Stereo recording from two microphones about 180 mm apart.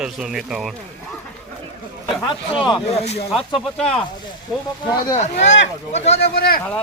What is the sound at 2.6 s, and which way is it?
Speech, 30° left (ahead or behind).